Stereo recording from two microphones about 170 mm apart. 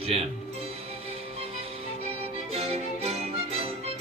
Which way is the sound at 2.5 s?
35° right (ahead or behind).